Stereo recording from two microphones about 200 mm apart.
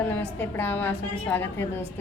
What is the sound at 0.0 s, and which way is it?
A woman's voice, 10° left (ahead or behind).